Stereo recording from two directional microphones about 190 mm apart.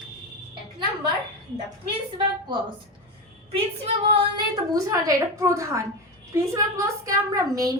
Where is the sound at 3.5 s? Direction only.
30° right (ahead or behind).